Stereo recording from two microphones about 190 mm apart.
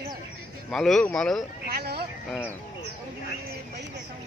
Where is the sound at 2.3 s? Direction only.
10° left (ahead or behind).